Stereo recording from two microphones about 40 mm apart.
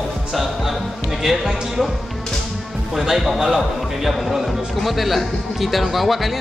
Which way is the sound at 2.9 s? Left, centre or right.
Centre.